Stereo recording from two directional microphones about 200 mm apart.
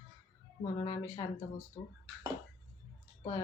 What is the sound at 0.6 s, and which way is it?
Speech, 25° left (ahead or behind).